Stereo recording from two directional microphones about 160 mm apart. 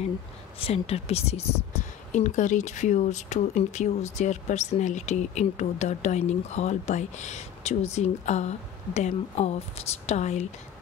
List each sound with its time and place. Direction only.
0.6 s speech: 40° left (ahead or behind)